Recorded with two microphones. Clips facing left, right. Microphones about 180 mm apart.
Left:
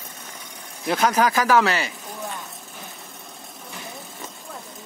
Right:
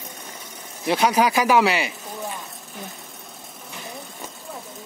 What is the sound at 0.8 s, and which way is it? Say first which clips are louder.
Speech: right 1 dB; centre (ahead or behind).